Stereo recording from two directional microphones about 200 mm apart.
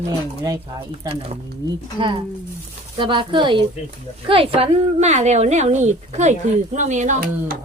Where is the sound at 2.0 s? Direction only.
25° right (ahead or behind); by 7.5 s 40° right (ahead or behind).